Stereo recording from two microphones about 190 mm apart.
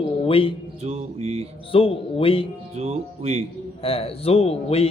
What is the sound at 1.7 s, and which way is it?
Speech, 30° left (ahead or behind).